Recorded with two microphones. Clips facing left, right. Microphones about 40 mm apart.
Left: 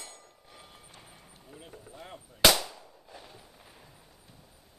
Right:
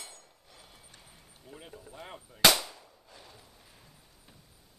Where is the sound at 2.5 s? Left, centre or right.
Centre.